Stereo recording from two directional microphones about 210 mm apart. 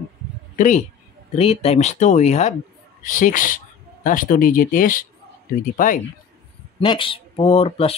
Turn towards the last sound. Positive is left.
turn(degrees=30)  # may be behind; listen again after turning